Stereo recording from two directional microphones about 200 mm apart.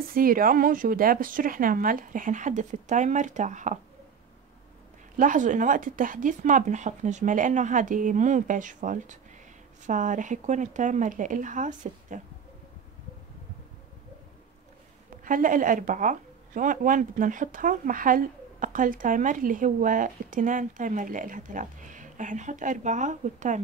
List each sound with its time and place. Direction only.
0.1 s speech: 45° right (ahead or behind)
5.1 s speech: 40° right (ahead or behind)
15.0 s speech: 40° right (ahead or behind)